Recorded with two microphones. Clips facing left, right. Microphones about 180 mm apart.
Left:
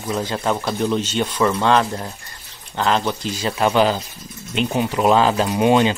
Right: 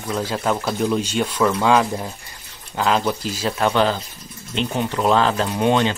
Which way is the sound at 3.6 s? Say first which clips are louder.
Left 2 dB; 10° left (ahead or behind).